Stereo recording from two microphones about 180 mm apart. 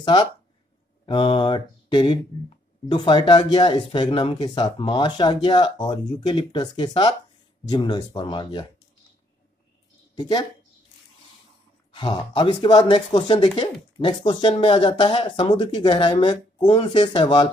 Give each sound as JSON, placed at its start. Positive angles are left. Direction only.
{"t": 0.0, "sound": "speech", "side_deg": 25}
{"t": 1.0, "sound": "mantra", "side_deg": 30}
{"t": 2.9, "sound": "speech", "side_deg": 25}
{"t": 10.1, "sound": "a woman's voice", "side_deg": 20}
{"t": 11.9, "sound": "speech", "side_deg": 25}